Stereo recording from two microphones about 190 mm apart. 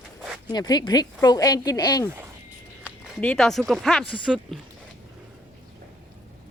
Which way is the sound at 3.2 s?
5° left (ahead or behind).